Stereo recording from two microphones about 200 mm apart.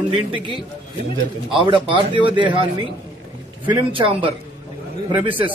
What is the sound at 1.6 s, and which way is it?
A man's voice, 25° right (ahead or behind).